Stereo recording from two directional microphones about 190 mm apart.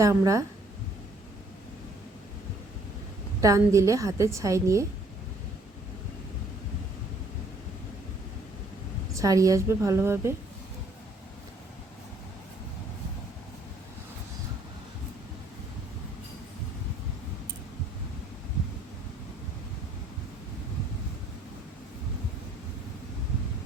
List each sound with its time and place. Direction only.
0.0 s a woman's voice: 15° right (ahead or behind)
3.4 s a woman's voice: 15° right (ahead or behind)
9.1 s a woman's voice: 15° right (ahead or behind)